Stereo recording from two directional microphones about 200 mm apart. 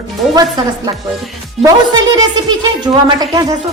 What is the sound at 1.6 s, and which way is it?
A woman's voice, 20° right (ahead or behind).